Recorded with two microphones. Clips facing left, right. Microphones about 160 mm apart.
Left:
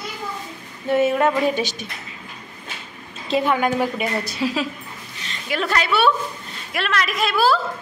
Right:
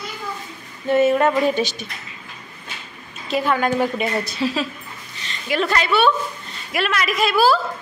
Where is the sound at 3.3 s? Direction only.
20° left (ahead or behind).